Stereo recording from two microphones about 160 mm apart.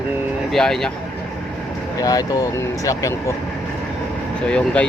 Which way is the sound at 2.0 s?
20° left (ahead or behind).